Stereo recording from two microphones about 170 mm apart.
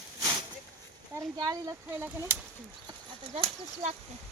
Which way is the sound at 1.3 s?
20° right (ahead or behind).